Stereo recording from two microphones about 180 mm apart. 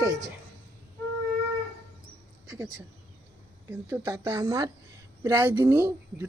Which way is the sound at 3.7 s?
15° right (ahead or behind).